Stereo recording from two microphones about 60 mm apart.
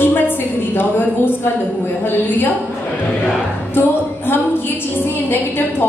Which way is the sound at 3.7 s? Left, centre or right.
Left.